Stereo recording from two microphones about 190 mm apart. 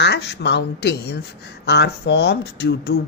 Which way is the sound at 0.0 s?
60° left (ahead or behind).